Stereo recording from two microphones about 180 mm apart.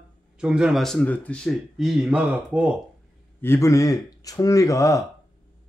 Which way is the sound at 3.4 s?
15° left (ahead or behind).